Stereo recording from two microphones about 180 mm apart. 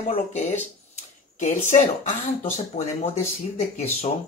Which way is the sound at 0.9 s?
40° left (ahead or behind).